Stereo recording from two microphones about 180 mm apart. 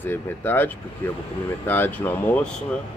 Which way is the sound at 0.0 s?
10° left (ahead or behind).